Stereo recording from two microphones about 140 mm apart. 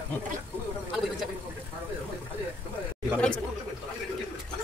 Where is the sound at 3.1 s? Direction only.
5° left (ahead or behind).